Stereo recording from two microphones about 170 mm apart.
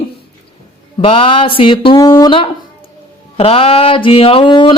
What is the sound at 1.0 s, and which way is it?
Speech, 30° left (ahead or behind).